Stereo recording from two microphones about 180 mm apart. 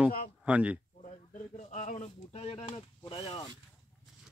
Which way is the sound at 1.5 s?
40° left (ahead or behind).